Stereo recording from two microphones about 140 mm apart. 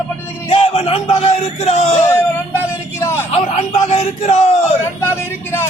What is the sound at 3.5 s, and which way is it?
A man's voice, 50° left (ahead or behind).